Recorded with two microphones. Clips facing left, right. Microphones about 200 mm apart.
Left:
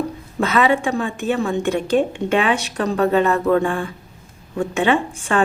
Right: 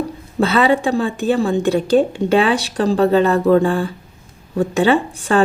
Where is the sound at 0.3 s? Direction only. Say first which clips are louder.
Right 3 dB; 30° right (ahead or behind).